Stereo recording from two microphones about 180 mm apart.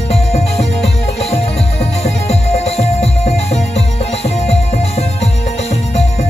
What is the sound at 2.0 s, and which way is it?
Music, 35° left (ahead or behind).